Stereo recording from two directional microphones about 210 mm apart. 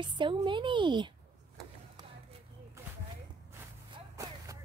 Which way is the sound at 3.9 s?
15° right (ahead or behind).